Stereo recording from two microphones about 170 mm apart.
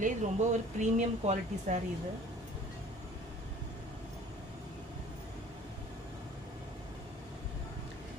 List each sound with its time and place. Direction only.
0.0 s speech: 45° right (ahead or behind)